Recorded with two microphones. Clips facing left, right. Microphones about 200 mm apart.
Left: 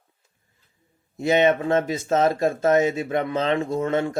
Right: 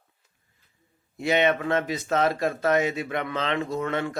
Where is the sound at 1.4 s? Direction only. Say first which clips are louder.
Left 4 dB; 25° left (ahead or behind).